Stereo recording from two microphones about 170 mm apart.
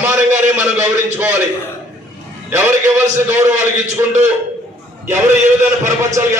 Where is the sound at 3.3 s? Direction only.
15° right (ahead or behind).